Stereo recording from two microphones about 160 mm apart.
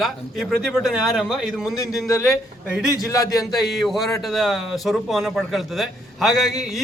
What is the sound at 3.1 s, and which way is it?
Speech, 20° left (ahead or behind).